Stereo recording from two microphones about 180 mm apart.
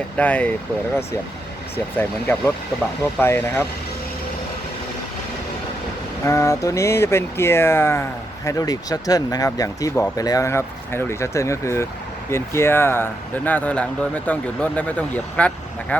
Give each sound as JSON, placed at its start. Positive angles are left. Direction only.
{"t": 0.2, "sound": "speech", "side_deg": 10}
{"t": 1.7, "sound": "speech", "side_deg": 10}
{"t": 6.2, "sound": "speech", "side_deg": 15}